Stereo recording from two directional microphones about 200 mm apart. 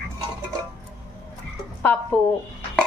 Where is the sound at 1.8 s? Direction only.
10° left (ahead or behind).